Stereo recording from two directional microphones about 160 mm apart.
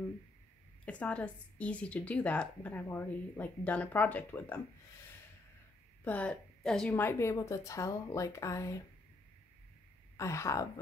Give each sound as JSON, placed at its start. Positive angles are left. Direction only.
{"t": 0.8, "sound": "speech", "side_deg": 10}
{"t": 6.0, "sound": "speech", "side_deg": 10}
{"t": 10.1, "sound": "speech", "side_deg": 20}